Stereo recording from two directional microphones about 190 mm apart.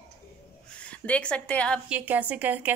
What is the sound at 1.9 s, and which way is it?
Speech, 10° right (ahead or behind).